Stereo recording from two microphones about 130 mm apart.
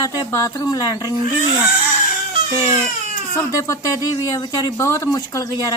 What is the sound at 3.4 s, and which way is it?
Speech, 25° left (ahead or behind).